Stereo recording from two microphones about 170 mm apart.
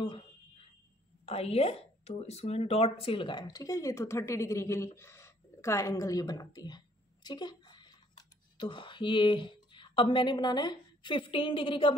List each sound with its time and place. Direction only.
1.2 s speech: 35° left (ahead or behind)